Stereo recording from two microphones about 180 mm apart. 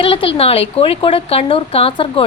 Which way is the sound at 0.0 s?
30° left (ahead or behind).